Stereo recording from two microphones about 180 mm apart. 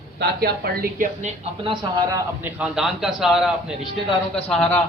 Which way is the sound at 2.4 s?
5° right (ahead or behind).